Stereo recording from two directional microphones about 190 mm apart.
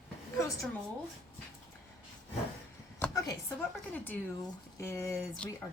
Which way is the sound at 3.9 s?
10° left (ahead or behind).